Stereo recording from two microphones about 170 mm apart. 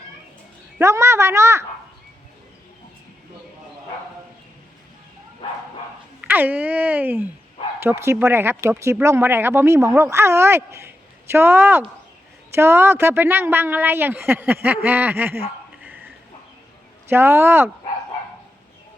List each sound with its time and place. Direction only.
0.8 s speech: 15° right (ahead or behind)
6.2 s speech: 10° right (ahead or behind)